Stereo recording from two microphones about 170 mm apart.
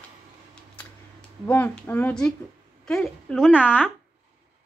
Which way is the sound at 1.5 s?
10° left (ahead or behind).